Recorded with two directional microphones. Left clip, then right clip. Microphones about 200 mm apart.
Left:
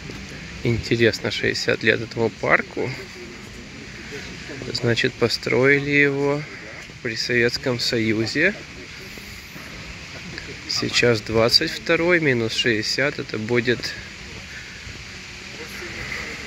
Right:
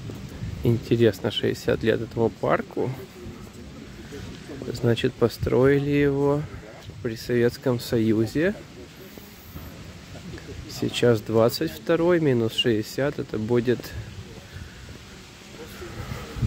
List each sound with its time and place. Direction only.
0.7 s speech: 20° right (ahead or behind)
2.1 s speech: 10° right (ahead or behind)
4.8 s speech: 20° right (ahead or behind)
7.0 s speech: 25° right (ahead or behind)
10.7 s speech: 25° right (ahead or behind)